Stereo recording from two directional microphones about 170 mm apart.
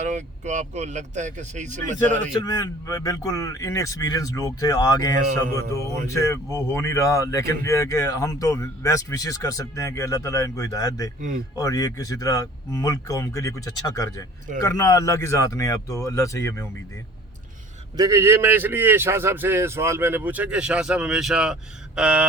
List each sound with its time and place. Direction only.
0.0 s speech: 45° right (ahead or behind)
2.3 s speech: 25° left (ahead or behind)
17.9 s a man's voice: 20° right (ahead or behind)